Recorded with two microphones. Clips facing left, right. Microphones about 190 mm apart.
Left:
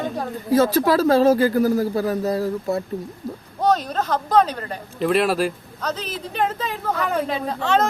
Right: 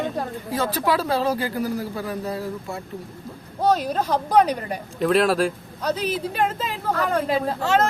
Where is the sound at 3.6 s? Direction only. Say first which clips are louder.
Even; 10° right (ahead or behind).